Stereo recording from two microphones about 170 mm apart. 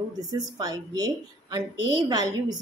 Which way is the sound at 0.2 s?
20° right (ahead or behind).